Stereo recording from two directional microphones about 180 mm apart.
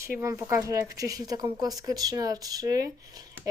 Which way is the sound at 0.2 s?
15° right (ahead or behind).